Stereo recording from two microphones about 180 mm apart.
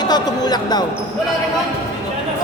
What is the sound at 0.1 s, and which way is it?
Speech, 20° left (ahead or behind).